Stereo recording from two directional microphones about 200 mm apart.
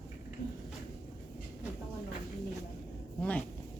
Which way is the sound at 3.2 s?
5° left (ahead or behind).